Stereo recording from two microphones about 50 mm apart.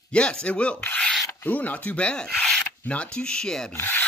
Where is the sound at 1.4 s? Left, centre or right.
Left.